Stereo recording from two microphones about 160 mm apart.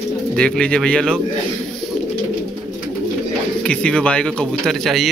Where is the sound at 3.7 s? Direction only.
5° left (ahead or behind).